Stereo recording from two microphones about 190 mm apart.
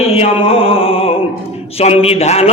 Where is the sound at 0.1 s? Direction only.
30° left (ahead or behind).